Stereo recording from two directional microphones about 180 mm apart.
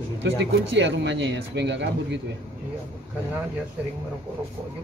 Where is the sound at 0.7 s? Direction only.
85° right.